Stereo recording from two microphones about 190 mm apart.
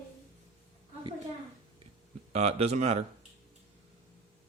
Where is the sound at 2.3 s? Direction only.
35° right (ahead or behind).